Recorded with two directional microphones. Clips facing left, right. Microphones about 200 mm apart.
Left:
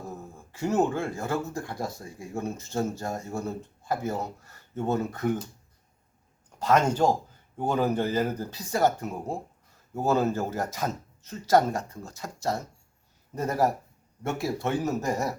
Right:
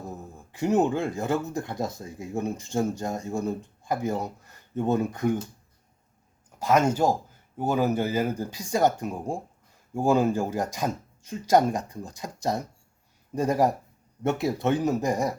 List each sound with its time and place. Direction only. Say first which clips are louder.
0.5 s speech: right 2 dB; 15° right (ahead or behind)
6.6 s speech: right 1 dB; 10° right (ahead or behind)